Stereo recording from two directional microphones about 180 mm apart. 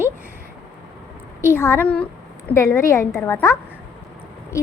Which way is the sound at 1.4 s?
15° left (ahead or behind).